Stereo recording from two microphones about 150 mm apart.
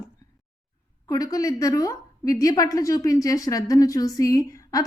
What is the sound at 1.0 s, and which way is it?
A woman's voice, 25° left (ahead or behind).